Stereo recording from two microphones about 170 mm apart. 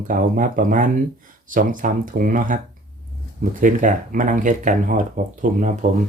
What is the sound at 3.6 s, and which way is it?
Speech, 50° right (ahead or behind).